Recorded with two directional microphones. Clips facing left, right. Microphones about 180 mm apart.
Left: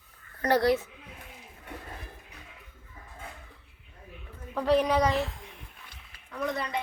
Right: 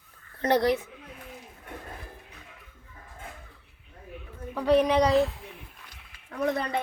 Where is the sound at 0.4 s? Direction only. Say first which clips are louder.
Right 1 dB; 20° right (ahead or behind).